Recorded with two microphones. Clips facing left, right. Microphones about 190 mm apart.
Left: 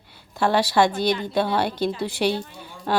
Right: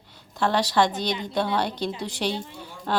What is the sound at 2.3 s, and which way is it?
Speech, 25° right (ahead or behind).